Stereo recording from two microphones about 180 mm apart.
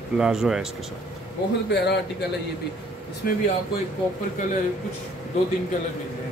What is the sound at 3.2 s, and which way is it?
Speech, 55° left (ahead or behind).